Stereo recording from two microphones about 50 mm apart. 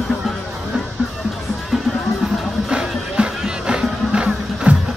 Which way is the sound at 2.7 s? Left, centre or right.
Centre.